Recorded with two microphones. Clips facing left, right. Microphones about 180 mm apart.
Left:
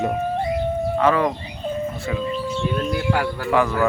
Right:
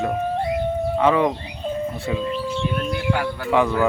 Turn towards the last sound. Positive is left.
turn(degrees=-20)  # may be behind; listen again after turning